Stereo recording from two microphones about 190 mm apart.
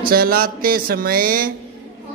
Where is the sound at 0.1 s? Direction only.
50° right (ahead or behind).